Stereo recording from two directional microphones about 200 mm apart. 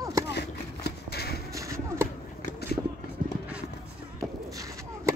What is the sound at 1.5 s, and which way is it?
Horse, 15° right (ahead or behind).